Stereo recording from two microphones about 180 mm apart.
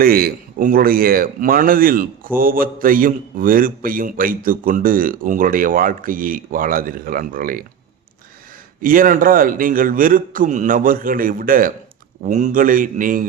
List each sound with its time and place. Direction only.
0.0 s speech: 55° right (ahead or behind)
8.8 s speech: 50° right (ahead or behind)